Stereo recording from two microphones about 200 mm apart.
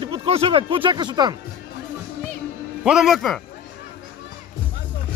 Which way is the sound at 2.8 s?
Centre (ahead or behind).